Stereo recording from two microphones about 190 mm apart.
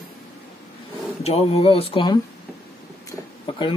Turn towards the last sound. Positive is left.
turn(degrees=25)  # may be behind; listen again after turning